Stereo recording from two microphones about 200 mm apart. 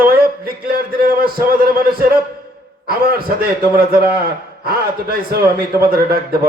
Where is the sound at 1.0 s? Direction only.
50° right (ahead or behind).